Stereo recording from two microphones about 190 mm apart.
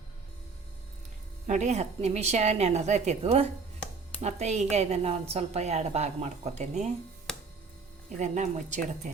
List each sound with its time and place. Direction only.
1.5 s a woman's voice: 35° right (ahead or behind)
7.3 s a sound: 5° left (ahead or behind)
8.2 s a woman's voice: 40° right (ahead or behind)